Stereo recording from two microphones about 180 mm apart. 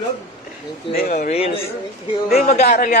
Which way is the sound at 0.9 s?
50° left (ahead or behind).